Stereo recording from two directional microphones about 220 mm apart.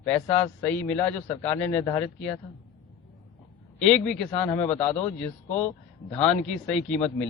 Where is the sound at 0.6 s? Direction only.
5° left (ahead or behind).